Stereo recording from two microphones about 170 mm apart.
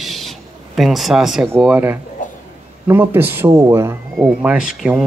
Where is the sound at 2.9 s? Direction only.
10° right (ahead or behind).